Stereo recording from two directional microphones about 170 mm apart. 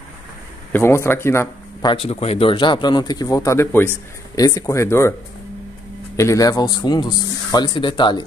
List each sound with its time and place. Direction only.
0.7 s speech: 15° left (ahead or behind)
1.9 s speech: 35° left (ahead or behind); by 5.1 s 15° left (ahead or behind)
6.1 s speech: 20° left (ahead or behind)